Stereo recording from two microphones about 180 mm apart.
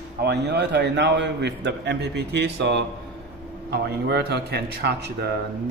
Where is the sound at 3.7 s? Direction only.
65° right (ahead or behind).